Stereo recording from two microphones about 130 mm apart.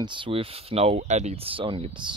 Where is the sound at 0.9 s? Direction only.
65° right (ahead or behind); by 2.1 s 40° right (ahead or behind).